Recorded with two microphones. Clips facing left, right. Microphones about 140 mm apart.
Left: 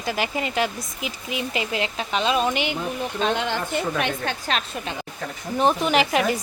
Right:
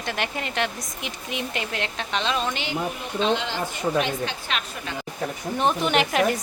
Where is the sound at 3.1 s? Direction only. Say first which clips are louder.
Right 1 dB; 50° left (ahead or behind).